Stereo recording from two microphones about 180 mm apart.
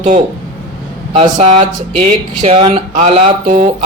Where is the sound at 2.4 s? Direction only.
35° right (ahead or behind).